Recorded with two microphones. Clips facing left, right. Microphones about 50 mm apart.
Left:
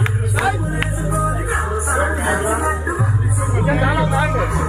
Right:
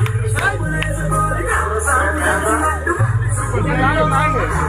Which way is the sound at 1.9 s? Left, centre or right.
Right.